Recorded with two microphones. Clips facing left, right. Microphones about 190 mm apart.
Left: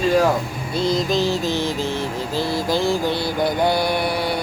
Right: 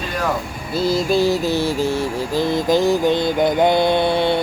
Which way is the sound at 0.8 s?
5° right (ahead or behind).